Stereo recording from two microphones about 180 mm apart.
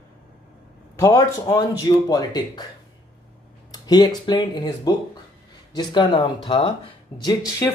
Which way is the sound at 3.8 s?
20° left (ahead or behind).